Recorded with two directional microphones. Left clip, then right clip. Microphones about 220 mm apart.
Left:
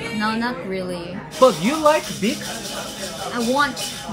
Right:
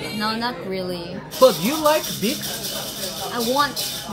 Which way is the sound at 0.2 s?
5° right (ahead or behind).